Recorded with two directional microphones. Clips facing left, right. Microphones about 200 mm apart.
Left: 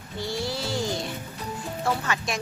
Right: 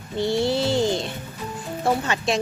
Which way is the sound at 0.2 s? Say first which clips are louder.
Right 9 dB; 25° right (ahead or behind).